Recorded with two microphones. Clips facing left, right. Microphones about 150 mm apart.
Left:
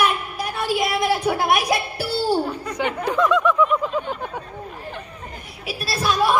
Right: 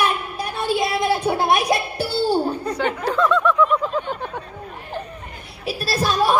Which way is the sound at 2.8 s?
15° left (ahead or behind).